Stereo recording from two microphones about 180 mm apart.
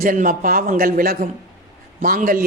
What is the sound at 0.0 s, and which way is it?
A man's voice, 50° right (ahead or behind).